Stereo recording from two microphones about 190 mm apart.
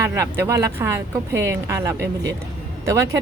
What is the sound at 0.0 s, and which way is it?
A woman's voice, 15° right (ahead or behind).